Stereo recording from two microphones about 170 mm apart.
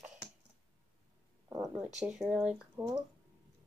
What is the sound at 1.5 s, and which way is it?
Speech, 15° right (ahead or behind).